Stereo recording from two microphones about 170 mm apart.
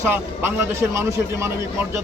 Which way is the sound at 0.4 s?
15° right (ahead or behind).